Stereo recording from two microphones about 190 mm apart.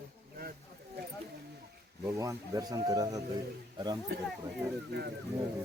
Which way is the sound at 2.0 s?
15° right (ahead or behind).